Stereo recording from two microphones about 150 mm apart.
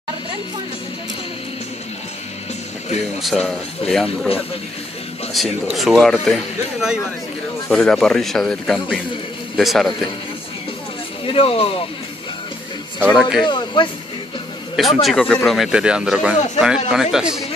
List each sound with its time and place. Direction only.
3.2 s speech: centre (ahead or behind)
5.3 s speech: centre (ahead or behind)
11.2 s speech: 40° left (ahead or behind)
13.1 s speech: centre (ahead or behind)
13.5 s speech: 30° left (ahead or behind)
14.8 s speech: centre (ahead or behind)